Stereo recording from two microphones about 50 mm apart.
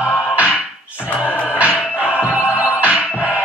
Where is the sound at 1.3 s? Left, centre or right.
Left.